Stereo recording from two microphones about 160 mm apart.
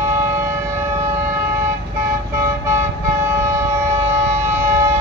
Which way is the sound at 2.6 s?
15° right (ahead or behind).